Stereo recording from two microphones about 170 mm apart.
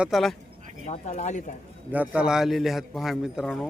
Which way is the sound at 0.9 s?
40° left (ahead or behind).